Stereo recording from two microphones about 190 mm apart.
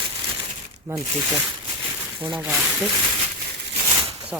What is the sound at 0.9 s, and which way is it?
Speech, 15° right (ahead or behind).